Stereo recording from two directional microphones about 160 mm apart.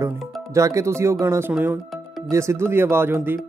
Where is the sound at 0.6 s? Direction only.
20° right (ahead or behind).